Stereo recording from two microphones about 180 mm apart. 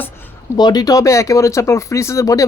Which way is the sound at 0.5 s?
25° left (ahead or behind).